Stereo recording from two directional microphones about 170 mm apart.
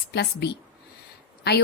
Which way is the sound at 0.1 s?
75° left (ahead or behind).